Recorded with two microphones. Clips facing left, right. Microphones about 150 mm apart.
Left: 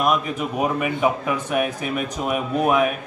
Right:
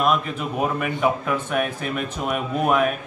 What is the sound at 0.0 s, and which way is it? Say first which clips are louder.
A man's voice: left 1 dB; 10° left (ahead or behind).